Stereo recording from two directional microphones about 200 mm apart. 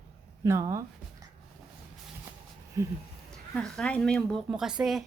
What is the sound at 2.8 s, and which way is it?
Speech, 15° right (ahead or behind).